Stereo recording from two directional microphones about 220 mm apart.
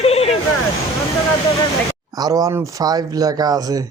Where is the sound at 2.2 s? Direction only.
15° right (ahead or behind).